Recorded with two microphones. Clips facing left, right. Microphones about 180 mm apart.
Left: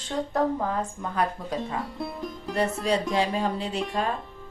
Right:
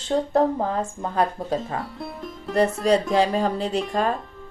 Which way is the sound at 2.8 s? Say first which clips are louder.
Right 5 dB; 40° right (ahead or behind).